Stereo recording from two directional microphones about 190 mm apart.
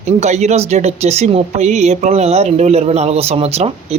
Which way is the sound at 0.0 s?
35° right (ahead or behind).